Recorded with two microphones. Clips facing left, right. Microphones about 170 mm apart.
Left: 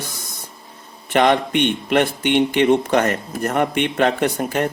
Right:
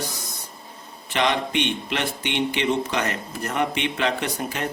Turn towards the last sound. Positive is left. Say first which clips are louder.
# left 8 dB
turn(degrees=50)  # may be behind; listen again after turning